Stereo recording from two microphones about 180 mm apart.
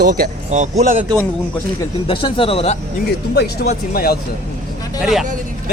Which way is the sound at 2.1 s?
30° left (ahead or behind).